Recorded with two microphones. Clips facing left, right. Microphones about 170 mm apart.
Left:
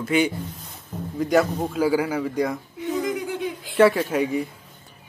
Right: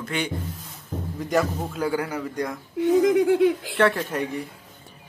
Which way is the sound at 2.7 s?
80° right.